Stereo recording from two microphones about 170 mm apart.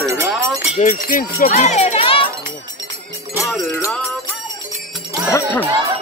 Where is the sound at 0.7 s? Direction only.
50° left (ahead or behind); by 2.2 s 35° left (ahead or behind).